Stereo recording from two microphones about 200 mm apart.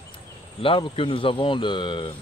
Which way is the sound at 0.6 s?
25° left (ahead or behind).